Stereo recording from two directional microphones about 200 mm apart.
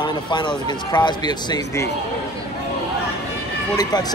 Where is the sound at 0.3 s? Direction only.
25° left (ahead or behind).